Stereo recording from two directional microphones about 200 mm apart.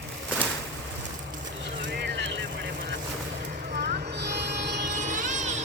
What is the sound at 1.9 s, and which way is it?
Vehicle, 60° right (ahead or behind).